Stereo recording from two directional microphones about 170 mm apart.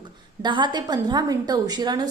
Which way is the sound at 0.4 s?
25° right (ahead or behind).